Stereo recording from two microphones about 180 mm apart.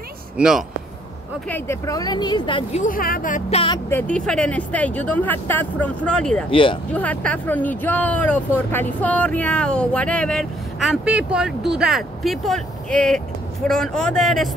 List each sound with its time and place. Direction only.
0.4 s a man's voice: centre (ahead or behind)
1.5 s speech: 15° left (ahead or behind)
2.8 s speech: 50° left (ahead or behind); by 3.7 s 35° left (ahead or behind)
3.9 s speech: 5° left (ahead or behind)
6.5 s speech: 30° left (ahead or behind)
6.9 s a man's voice: 10° left (ahead or behind)